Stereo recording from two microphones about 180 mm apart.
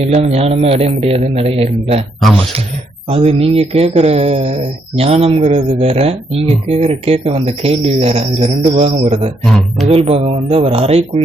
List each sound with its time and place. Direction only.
0.0 s speech: 35° right (ahead or behind)
3.1 s speech: 35° right (ahead or behind)
9.4 s speech: centre (ahead or behind)
9.9 s speech: 35° right (ahead or behind)